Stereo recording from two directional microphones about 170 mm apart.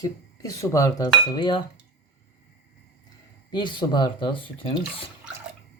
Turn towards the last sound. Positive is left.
turn(degrees=30)  # may be behind; listen again after turning